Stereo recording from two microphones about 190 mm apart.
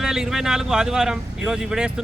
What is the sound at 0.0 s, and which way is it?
Speech, 5° right (ahead or behind).